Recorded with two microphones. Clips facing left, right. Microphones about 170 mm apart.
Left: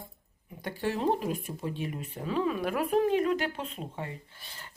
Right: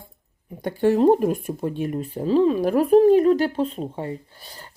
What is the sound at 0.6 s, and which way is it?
Speech, 50° right (ahead or behind).